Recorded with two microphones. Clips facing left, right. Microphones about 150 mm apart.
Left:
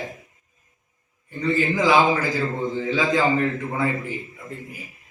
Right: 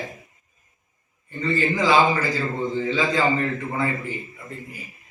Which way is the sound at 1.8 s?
15° left (ahead or behind).